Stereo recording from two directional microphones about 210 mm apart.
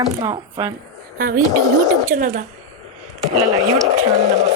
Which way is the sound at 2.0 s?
40° right (ahead or behind).